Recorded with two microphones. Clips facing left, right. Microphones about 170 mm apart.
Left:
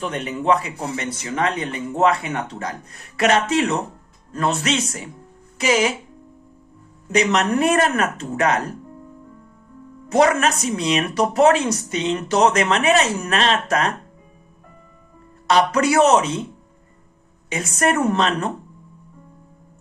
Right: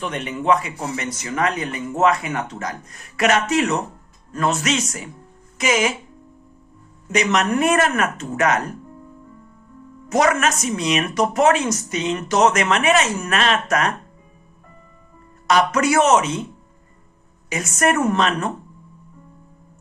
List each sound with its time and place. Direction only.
0.0 s speech: 35° left (ahead or behind)
7.1 s speech: 35° left (ahead or behind)
10.1 s speech: 30° left (ahead or behind)
15.4 s speech: 30° left (ahead or behind)
17.5 s speech: 30° left (ahead or behind)